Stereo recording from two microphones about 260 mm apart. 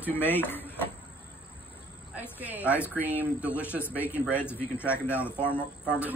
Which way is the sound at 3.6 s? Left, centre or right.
Centre.